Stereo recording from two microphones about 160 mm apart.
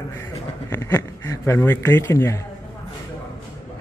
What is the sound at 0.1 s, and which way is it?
Speech, 15° left (ahead or behind).